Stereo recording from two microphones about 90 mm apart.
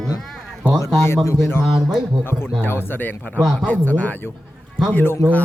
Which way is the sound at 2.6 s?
20° left (ahead or behind).